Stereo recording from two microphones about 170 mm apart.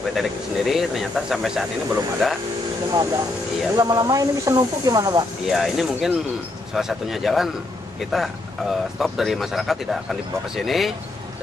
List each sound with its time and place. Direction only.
0.1 s speech: centre (ahead or behind)
2.9 s speech: 20° right (ahead or behind)
5.5 s speech: centre (ahead or behind)